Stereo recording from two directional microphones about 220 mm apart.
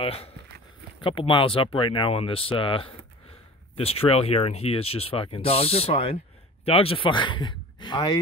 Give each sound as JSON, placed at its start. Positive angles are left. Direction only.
{"t": 0.0, "sound": "speech", "side_deg": 25}